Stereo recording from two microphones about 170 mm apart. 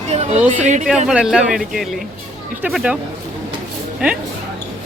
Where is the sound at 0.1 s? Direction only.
40° right (ahead or behind).